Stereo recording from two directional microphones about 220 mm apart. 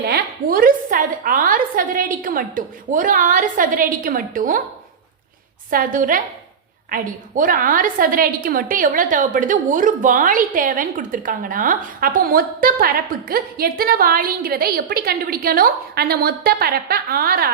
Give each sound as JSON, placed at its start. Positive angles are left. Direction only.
{"t": 0.1, "sound": "a woman's voice", "side_deg": -40}
{"t": 5.7, "sound": "a woman's voice", "side_deg": -40}